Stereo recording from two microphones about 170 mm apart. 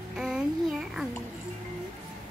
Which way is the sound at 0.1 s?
5° right (ahead or behind).